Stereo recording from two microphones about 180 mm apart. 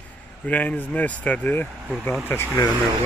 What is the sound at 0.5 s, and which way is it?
Speech, 10° left (ahead or behind).